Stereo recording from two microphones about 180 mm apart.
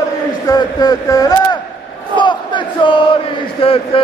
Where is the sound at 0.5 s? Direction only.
20° left (ahead or behind).